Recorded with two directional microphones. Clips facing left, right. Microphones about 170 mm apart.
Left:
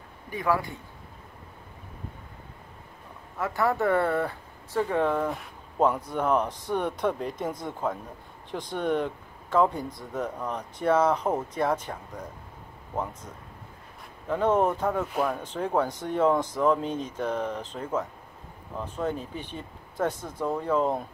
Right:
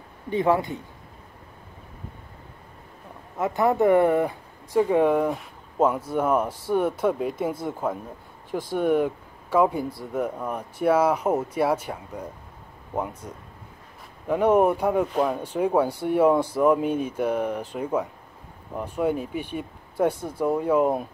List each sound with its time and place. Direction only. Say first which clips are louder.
0.3 s speech: right 5 dB; 25° right (ahead or behind)
3.3 s speech: right 5 dB; 20° right (ahead or behind)
5.3 s speech: right 4 dB; 5° right (ahead or behind)